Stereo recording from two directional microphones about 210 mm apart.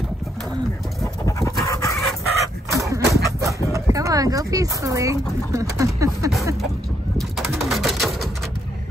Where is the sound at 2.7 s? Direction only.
15° right (ahead or behind).